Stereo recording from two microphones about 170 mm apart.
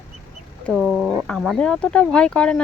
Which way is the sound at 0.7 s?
5° right (ahead or behind).